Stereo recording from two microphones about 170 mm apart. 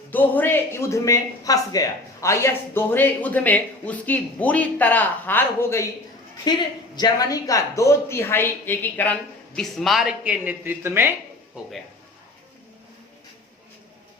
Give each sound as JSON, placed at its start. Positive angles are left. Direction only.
{"t": 0.1, "sound": "speech", "side_deg": 10}